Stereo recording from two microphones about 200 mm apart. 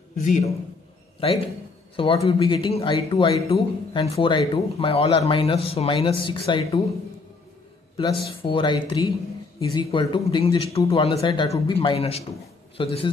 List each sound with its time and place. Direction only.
0.2 s a man's voice: 35° left (ahead or behind)
2.0 s speech: 25° left (ahead or behind)
8.0 s speech: 25° left (ahead or behind)